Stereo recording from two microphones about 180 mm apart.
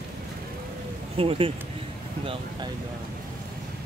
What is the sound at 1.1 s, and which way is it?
Speech, 30° right (ahead or behind).